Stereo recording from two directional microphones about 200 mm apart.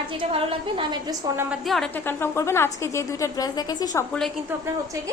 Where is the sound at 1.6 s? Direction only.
Centre (ahead or behind); by 4.0 s 20° left (ahead or behind).